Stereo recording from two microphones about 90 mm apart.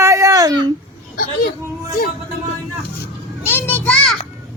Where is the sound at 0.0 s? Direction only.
35° right (ahead or behind).